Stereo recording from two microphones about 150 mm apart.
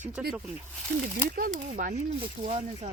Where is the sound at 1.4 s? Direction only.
70° right (ahead or behind).